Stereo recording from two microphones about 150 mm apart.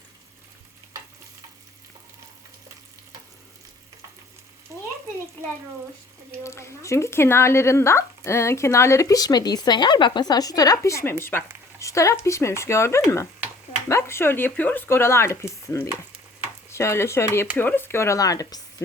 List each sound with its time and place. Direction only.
4.7 s frying: 20° right (ahead or behind)
6.4 s speech: 20° left (ahead or behind)